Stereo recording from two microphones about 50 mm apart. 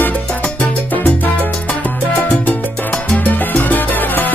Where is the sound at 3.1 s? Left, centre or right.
Left.